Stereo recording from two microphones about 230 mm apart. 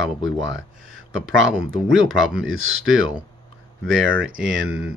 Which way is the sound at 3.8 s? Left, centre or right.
Right.